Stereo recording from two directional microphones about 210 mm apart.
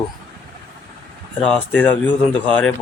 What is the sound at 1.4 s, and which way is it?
Speech, 5° left (ahead or behind).